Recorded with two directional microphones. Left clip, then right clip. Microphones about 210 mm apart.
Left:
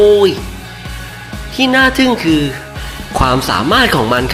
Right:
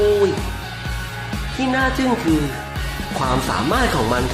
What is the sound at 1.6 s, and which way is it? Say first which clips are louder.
Speech: left 9 dB; 25° left (ahead or behind).